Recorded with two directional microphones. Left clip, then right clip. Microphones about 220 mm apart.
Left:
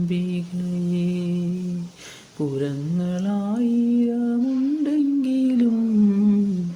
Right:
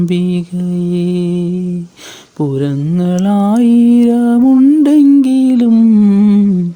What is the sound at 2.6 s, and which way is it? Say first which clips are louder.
Mantra: right 10 dB; 40° right (ahead or behind).